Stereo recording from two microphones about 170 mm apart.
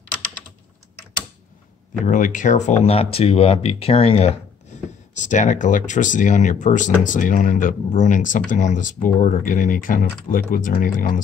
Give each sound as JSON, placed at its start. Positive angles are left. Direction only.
{"t": 2.0, "sound": "speech", "side_deg": 50}